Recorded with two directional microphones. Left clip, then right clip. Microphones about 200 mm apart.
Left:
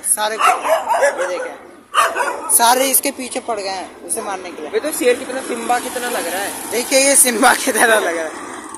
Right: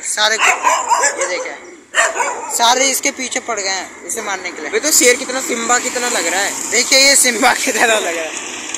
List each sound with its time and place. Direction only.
0.2 s speech: 5° left (ahead or behind)
0.7 s speech: 45° left (ahead or behind)
2.0 s speech: 55° left (ahead or behind)
2.5 s a woman's voice: 15° left (ahead or behind)
4.7 s speech: 40° right (ahead or behind)
6.7 s a woman's voice: 10° left (ahead or behind)